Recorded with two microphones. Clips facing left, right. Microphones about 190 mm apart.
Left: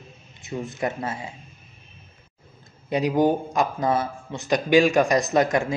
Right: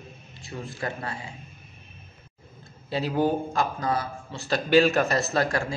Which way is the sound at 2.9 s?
15° left (ahead or behind).